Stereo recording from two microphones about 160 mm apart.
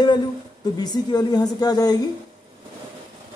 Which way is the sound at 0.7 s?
25° left (ahead or behind).